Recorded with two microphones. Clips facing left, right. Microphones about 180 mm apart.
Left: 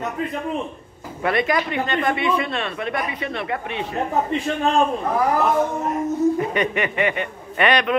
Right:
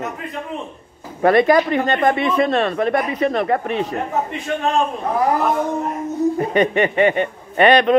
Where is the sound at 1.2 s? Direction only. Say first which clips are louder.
Right 8 dB; 35° right (ahead or behind).